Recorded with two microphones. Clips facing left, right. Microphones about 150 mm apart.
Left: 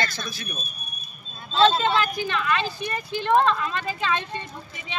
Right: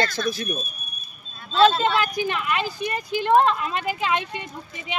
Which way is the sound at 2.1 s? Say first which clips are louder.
Right 1 dB; 15° right (ahead or behind).